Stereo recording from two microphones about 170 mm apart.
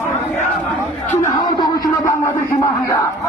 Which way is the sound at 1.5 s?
20° left (ahead or behind).